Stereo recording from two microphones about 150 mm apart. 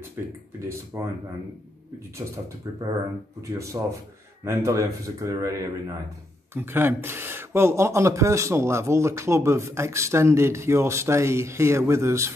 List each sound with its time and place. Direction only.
0.2 s speech: 15° right (ahead or behind)
2.1 s a man's voice: 20° right (ahead or behind)